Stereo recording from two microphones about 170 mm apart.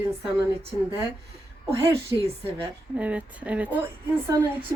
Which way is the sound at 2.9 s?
10° right (ahead or behind).